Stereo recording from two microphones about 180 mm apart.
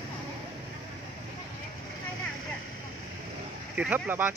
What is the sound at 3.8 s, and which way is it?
Speech, 10° right (ahead or behind).